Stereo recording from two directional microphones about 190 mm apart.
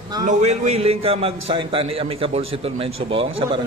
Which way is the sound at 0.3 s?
35° right (ahead or behind).